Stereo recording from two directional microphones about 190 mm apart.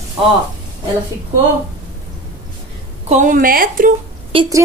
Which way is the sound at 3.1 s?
40° right (ahead or behind).